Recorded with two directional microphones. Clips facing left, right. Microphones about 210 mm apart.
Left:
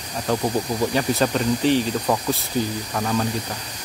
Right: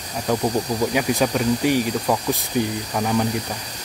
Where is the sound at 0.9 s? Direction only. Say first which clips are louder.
Even; 10° right (ahead or behind).